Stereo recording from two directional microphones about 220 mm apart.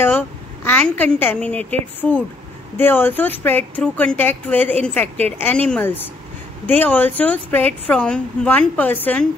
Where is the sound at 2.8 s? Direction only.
10° left (ahead or behind).